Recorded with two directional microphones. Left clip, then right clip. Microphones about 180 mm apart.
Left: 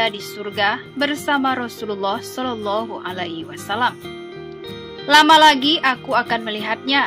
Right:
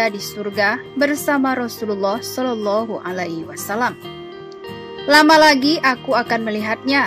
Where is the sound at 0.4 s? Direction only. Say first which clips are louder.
Right 1 dB; 15° right (ahead or behind).